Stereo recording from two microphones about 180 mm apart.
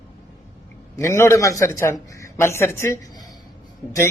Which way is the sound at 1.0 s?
15° left (ahead or behind).